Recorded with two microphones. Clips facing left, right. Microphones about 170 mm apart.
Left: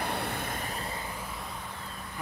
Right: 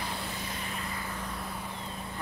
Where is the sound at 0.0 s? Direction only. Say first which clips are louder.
Left 4 dB; 60° left (ahead or behind); by 0.8 s 45° left (ahead or behind).